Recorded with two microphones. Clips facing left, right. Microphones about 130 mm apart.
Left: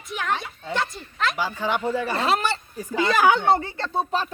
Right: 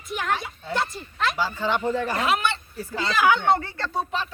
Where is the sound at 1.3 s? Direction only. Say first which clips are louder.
Even; 15° left (ahead or behind).